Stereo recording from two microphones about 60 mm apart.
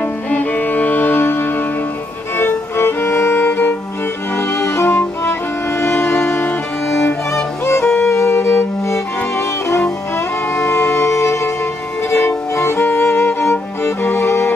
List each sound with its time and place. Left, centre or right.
0.0 s music: left
6.2 s music: left
7.6 s music: left
8.1 s music: left
10.1 s music: left